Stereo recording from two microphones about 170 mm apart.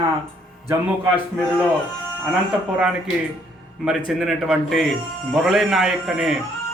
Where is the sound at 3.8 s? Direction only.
Centre (ahead or behind).